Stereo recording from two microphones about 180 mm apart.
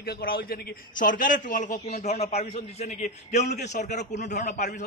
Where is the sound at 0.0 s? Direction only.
55° left (ahead or behind).